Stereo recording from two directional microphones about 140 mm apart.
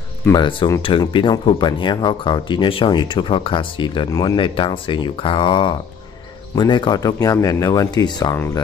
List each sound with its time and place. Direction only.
0.3 s speech: 35° left (ahead or behind)